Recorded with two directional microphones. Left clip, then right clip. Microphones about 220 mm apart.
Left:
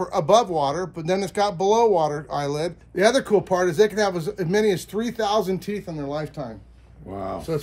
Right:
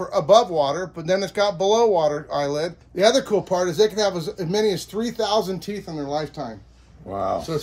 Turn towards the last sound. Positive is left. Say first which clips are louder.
# right 6 dB
turn(degrees=-15)  # may be behind; listen again after turning